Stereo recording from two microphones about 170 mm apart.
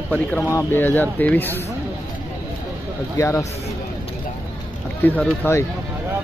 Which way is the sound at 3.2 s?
20° left (ahead or behind).